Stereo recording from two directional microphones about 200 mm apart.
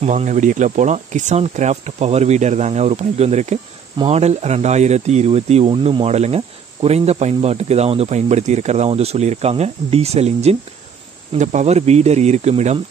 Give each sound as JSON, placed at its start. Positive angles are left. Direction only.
{"t": 0.0, "sound": "speech", "side_deg": -35}